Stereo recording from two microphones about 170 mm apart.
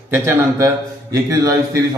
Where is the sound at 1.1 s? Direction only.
20° right (ahead or behind).